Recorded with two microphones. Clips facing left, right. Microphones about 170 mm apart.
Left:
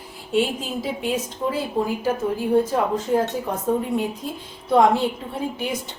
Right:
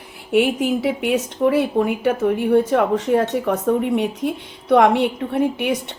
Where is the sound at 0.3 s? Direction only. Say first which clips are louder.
Right 6 dB; 65° right (ahead or behind).